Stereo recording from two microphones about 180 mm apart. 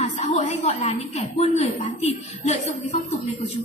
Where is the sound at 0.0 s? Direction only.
35° left (ahead or behind).